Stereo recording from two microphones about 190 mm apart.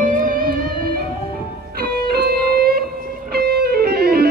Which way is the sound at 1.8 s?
55° right (ahead or behind).